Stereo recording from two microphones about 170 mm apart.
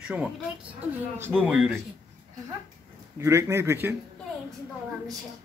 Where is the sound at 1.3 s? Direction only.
5° right (ahead or behind).